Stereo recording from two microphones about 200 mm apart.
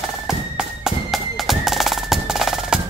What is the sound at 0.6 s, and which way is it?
Music, centre (ahead or behind).